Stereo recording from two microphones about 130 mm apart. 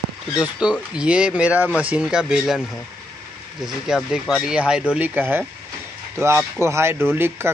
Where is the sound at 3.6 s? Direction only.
5° right (ahead or behind).